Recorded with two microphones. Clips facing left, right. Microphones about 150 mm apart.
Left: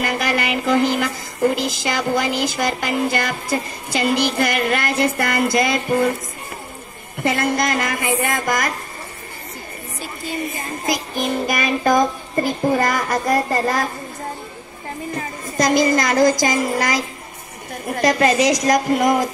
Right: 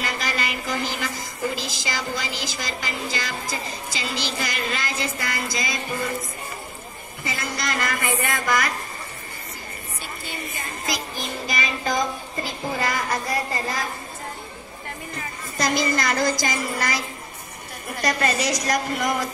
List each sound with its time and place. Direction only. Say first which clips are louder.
0.0 s music: left 7 dB; 60° left (ahead or behind)
7.2 s music: left 10 dB; 60° left (ahead or behind)
10.9 s music: left 9 dB; 50° left (ahead or behind)
15.1 s speech: left 7 dB; 45° left (ahead or behind)
17.8 s music: left 7 dB; 45° left (ahead or behind)